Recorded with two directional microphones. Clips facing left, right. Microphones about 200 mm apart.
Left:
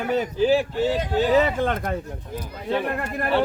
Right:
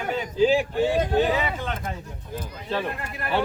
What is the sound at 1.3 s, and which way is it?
Speech, 50° left (ahead or behind).